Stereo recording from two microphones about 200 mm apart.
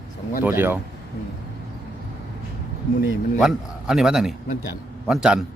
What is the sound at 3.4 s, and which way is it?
A man's voice, 5° right (ahead or behind).